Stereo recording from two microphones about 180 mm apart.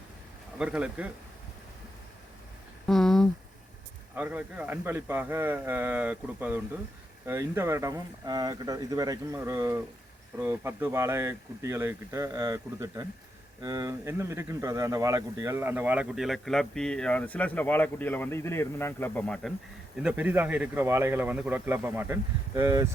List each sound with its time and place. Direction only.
0.6 s speech: 5° right (ahead or behind)
2.8 s a sound: centre (ahead or behind)
4.1 s speech: 10° right (ahead or behind)
20.0 s speech: 5° right (ahead or behind)